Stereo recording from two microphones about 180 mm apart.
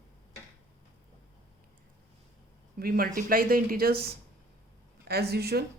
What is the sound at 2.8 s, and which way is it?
Speech, 55° right (ahead or behind).